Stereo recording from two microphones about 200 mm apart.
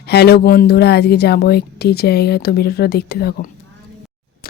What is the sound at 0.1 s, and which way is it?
A woman's voice, 55° left (ahead or behind).